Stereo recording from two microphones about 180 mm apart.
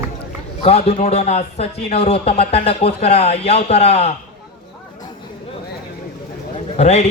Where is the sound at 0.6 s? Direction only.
35° left (ahead or behind).